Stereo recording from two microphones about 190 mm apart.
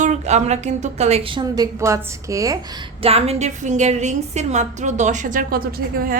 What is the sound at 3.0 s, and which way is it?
A woman's voice, 30° right (ahead or behind).